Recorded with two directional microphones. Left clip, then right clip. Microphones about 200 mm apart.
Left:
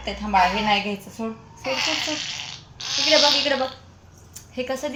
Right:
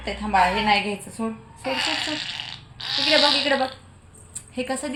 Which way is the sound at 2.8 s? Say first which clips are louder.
Even; 15° right (ahead or behind).